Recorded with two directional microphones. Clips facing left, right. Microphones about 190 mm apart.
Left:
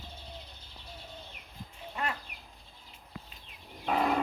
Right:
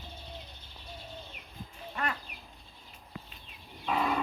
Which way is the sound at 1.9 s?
20° left (ahead or behind).